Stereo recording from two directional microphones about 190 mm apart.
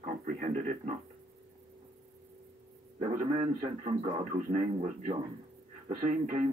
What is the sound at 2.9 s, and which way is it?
A man's voice, 35° right (ahead or behind).